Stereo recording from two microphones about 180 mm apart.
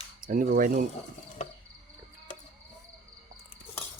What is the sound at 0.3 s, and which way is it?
Speech, 50° right (ahead or behind).